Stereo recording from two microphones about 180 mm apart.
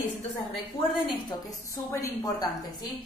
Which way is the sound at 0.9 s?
25° left (ahead or behind).